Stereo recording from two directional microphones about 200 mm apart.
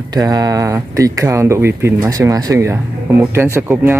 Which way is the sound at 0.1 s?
20° right (ahead or behind).